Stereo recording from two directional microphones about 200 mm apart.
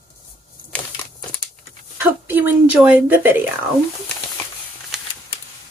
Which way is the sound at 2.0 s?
10° right (ahead or behind).